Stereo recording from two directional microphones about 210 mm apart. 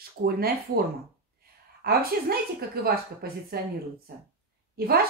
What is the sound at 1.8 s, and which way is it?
A woman's voice, 45° right (ahead or behind).